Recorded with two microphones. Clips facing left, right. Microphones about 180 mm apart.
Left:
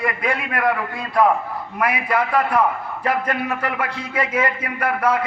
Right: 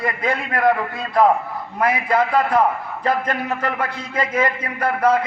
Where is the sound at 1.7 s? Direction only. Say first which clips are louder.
Right 2 dB; 25° right (ahead or behind).